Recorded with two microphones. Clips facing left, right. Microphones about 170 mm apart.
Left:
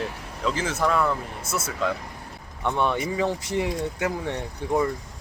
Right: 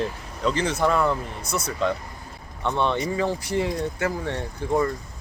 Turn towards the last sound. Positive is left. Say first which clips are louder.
# right 1 dB
turn(degrees=15)  # may be behind; listen again after turning